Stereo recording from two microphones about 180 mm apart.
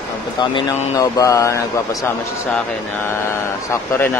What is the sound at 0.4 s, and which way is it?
Speech, 20° left (ahead or behind).